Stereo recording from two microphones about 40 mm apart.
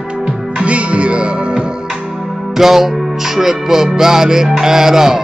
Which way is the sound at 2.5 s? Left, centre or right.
Centre.